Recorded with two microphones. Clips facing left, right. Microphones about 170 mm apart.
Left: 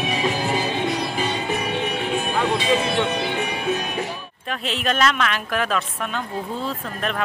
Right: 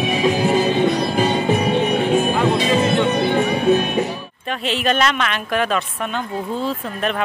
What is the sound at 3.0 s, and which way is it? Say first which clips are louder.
Music: right 6 dB; 45° right (ahead or behind).